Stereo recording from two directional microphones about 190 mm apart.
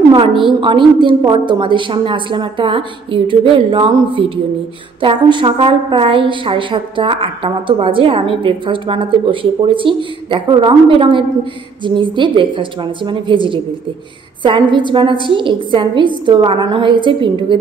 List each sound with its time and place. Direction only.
0.1 s a woman's voice: 25° right (ahead or behind)